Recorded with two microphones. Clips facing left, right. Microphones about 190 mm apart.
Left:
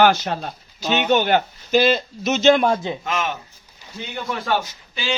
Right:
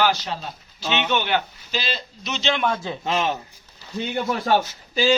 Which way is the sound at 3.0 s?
35° right (ahead or behind).